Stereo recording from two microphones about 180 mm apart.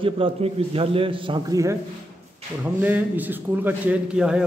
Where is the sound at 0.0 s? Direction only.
30° right (ahead or behind).